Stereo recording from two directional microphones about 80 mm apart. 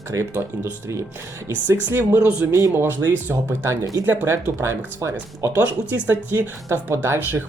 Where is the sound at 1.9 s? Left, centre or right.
Right.